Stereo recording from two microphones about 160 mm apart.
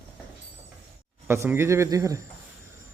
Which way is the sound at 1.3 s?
15° right (ahead or behind).